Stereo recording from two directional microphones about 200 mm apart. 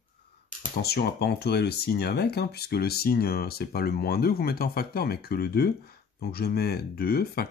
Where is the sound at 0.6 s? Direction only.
50° left (ahead or behind).